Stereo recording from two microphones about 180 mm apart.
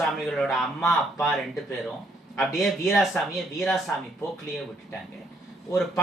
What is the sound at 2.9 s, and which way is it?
Speech, centre (ahead or behind).